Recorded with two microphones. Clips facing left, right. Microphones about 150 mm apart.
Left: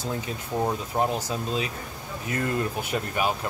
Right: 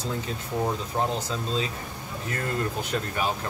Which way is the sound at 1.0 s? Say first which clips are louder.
Left 2 dB; 15° left (ahead or behind).